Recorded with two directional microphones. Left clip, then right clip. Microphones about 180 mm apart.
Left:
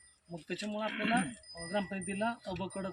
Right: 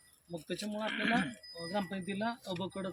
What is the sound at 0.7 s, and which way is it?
Speech, 5° right (ahead or behind).